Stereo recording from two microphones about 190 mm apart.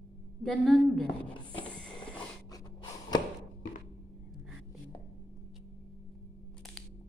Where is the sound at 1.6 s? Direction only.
5° left (ahead or behind).